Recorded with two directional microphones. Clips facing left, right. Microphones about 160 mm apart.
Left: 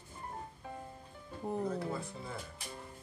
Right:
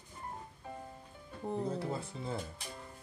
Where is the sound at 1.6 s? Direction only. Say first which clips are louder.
Even; 30° right (ahead or behind).